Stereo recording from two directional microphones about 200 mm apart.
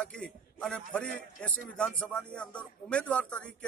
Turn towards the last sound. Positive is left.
turn(degrees=5)  # may be behind; listen again after turning